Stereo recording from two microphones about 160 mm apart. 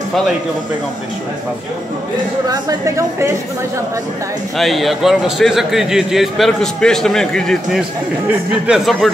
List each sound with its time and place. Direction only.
2.5 s a woman's voice: 20° right (ahead or behind)
4.6 s a man's voice: centre (ahead or behind)